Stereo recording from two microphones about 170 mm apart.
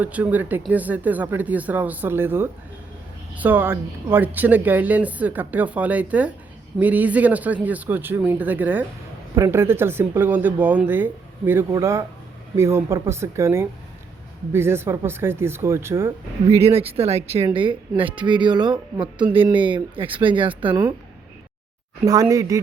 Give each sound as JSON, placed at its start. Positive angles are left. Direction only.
{"t": 0.0, "sound": "speech", "side_deg": -10}
{"t": 16.5, "sound": "speech", "side_deg": -35}
{"t": 22.0, "sound": "speech", "side_deg": -20}